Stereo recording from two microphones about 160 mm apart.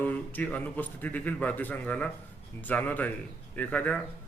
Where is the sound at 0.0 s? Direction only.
10° left (ahead or behind).